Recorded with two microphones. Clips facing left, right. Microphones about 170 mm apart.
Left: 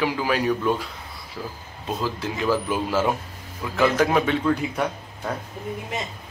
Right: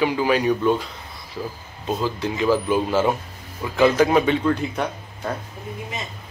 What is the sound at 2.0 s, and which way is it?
Speech, centre (ahead or behind).